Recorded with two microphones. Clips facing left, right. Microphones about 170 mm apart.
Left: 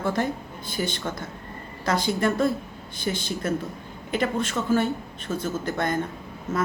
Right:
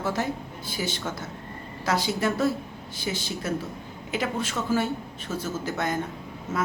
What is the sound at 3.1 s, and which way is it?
Speech, 55° left (ahead or behind).